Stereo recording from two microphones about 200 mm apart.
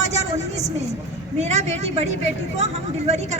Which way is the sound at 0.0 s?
35° right (ahead or behind).